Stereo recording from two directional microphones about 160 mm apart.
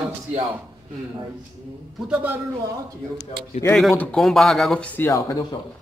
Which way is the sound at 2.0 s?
5° right (ahead or behind).